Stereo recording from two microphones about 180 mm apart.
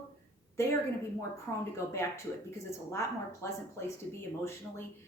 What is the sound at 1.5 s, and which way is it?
A woman's voice, 15° left (ahead or behind).